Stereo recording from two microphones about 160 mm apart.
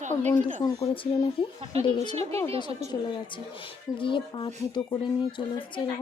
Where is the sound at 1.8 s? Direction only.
30° left (ahead or behind).